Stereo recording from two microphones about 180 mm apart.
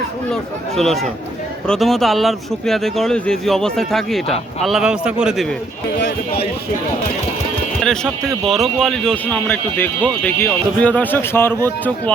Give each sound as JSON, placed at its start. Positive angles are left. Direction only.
{"t": 1.6, "sound": "speech", "side_deg": 5}
{"t": 6.0, "sound": "speech", "side_deg": 70}
{"t": 7.8, "sound": "speech", "side_deg": 0}